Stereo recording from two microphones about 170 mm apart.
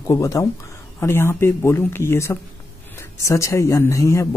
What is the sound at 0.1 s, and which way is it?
Speech, 20° left (ahead or behind).